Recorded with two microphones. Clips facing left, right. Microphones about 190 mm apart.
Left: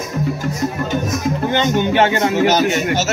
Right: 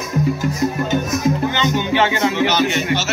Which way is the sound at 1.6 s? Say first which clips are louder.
Left 3 dB; 50° left (ahead or behind).